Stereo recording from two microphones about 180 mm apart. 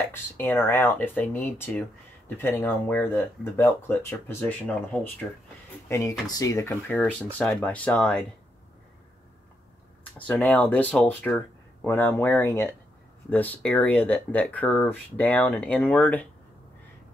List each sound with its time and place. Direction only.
0.1 s speech: 10° left (ahead or behind)
10.1 s speech: 10° left (ahead or behind)